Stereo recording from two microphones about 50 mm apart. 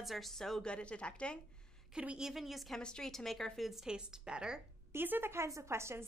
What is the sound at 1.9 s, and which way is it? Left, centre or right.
Speech, centre.